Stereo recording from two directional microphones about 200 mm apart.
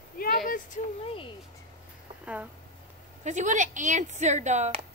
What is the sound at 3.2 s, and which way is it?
Speech, 35° right (ahead or behind).